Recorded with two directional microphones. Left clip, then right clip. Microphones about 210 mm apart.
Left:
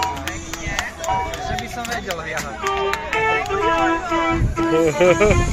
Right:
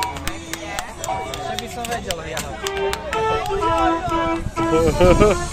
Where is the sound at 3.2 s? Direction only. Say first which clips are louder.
Left 1 dB; 25° left (ahead or behind).